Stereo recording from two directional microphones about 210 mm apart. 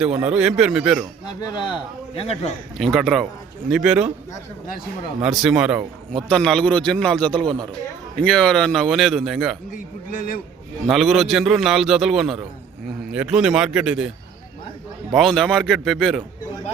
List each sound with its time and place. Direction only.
0.0 s a man's voice: 5° right (ahead or behind)
1.4 s a man's voice: 20° left (ahead or behind)
2.7 s a man's voice: centre (ahead or behind)
5.2 s a man's voice: 5° right (ahead or behind)
7.3 s speech: 20° right (ahead or behind)
8.2 s a man's voice: 5° left (ahead or behind)
9.7 s a man's voice: 40° left (ahead or behind)
10.8 s a man's voice: centre (ahead or behind)
15.1 s a man's voice: centre (ahead or behind)